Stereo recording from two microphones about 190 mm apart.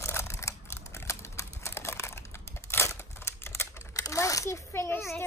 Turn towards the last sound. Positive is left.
turn(degrees=15)  # may be behind; listen again after turning